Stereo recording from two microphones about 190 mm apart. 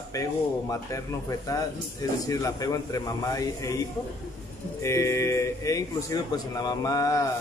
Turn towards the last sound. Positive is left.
turn(degrees=20)  # may be behind; listen again after turning